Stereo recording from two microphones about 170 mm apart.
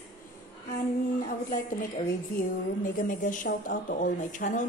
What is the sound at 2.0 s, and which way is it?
A woman's voice, 55° left (ahead or behind).